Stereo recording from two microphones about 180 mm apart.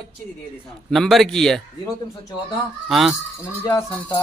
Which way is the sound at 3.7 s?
25° left (ahead or behind).